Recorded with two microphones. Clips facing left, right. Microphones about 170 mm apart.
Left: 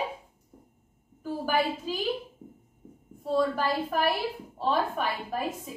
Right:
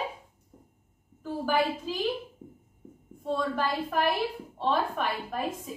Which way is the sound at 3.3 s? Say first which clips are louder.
Left 3 dB; 5° left (ahead or behind).